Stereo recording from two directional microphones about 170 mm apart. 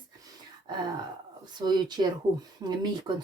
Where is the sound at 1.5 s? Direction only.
25° right (ahead or behind).